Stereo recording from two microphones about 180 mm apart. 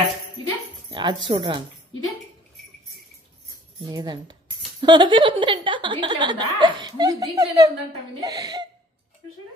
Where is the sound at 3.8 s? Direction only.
25° right (ahead or behind).